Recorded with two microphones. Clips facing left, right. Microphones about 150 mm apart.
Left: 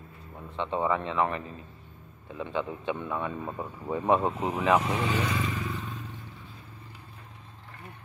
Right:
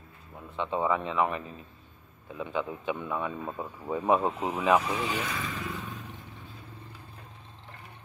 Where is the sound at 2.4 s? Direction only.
10° right (ahead or behind).